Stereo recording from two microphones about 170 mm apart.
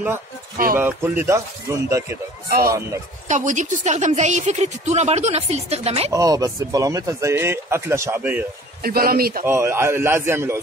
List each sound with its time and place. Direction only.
0.7 s speech: 15° right (ahead or behind)
3.3 s speech: 45° right (ahead or behind)
6.1 s speech: 20° right (ahead or behind)
8.8 s speech: 60° right (ahead or behind)
9.5 s speech: 15° right (ahead or behind)